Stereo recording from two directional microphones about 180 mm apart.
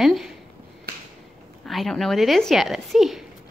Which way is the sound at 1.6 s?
Centre (ahead or behind).